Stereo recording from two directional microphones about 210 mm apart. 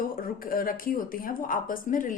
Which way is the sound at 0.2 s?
45° left (ahead or behind).